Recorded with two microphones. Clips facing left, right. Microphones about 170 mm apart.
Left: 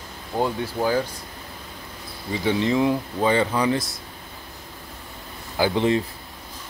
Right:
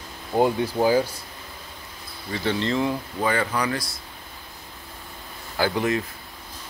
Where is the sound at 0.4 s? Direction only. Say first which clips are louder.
Right 4 dB; 15° right (ahead or behind).